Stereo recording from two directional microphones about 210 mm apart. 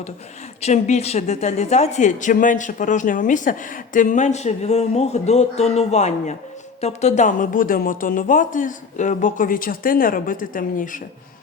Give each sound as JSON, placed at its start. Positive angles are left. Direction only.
{"t": 0.6, "sound": "speech", "side_deg": 30}